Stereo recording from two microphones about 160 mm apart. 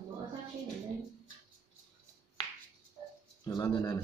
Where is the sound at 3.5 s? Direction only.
25° left (ahead or behind).